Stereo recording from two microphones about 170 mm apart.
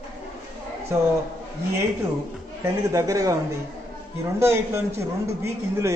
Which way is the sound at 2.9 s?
20° right (ahead or behind).